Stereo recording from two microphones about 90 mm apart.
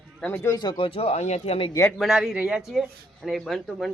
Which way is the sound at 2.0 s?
5° right (ahead or behind).